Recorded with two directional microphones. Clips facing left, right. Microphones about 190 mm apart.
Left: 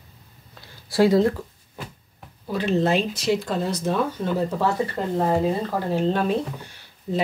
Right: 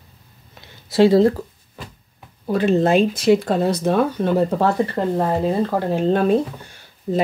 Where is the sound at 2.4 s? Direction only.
50° right (ahead or behind).